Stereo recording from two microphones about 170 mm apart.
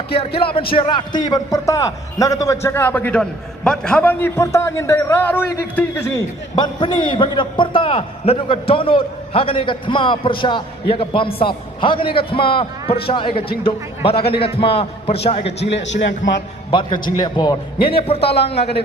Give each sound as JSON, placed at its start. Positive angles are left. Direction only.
{"t": 0.3, "sound": "a man's voice", "side_deg": 30}
{"t": 6.6, "sound": "a man's voice", "side_deg": 25}
{"t": 15.9, "sound": "a man's voice", "side_deg": 90}
{"t": 16.7, "sound": "a man's voice", "side_deg": 25}